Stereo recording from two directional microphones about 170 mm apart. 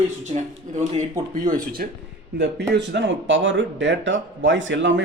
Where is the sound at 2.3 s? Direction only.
85° right.